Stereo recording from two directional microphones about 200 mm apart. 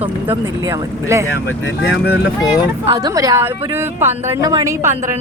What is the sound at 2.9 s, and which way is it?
A woman's voice, 20° right (ahead or behind).